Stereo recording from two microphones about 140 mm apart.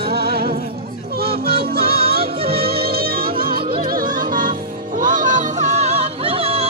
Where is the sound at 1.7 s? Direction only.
90° right.